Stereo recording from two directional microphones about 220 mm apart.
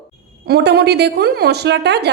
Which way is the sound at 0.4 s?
45° right (ahead or behind).